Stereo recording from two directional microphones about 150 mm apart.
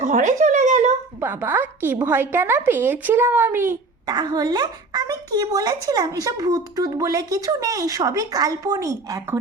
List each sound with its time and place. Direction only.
0.0 s a sound: 55° right (ahead or behind)
1.2 s speech: 15° right (ahead or behind)
4.0 s a woman's voice: 25° right (ahead or behind)